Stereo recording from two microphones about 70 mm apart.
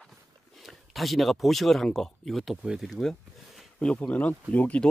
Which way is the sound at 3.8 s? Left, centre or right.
Centre.